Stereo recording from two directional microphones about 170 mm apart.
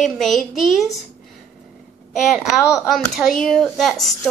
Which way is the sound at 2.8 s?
Centre (ahead or behind).